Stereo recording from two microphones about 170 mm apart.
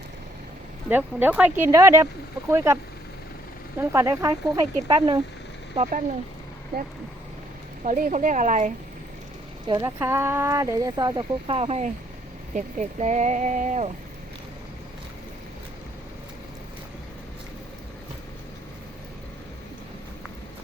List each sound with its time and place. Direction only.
0.9 s speech: 10° right (ahead or behind)
3.8 s speech: 20° right (ahead or behind)
5.7 s speech: 45° right (ahead or behind)
7.9 s speech: 50° right (ahead or behind)
9.6 s speech: 20° right (ahead or behind); by 13.9 s 45° right (ahead or behind)